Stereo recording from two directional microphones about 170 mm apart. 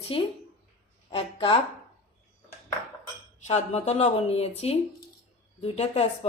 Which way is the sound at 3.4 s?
40° left (ahead or behind).